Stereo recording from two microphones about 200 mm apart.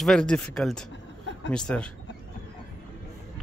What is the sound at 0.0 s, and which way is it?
Speech, 5° left (ahead or behind).